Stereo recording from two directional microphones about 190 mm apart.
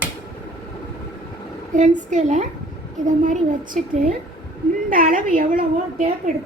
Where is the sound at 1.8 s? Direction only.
40° right (ahead or behind).